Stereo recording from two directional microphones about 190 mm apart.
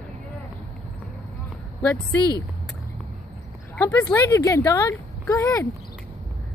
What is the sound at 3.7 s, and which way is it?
Speech, 10° left (ahead or behind).